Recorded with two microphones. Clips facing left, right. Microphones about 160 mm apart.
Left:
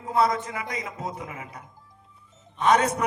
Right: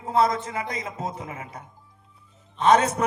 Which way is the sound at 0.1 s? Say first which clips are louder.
Right 1 dB; 25° right (ahead or behind).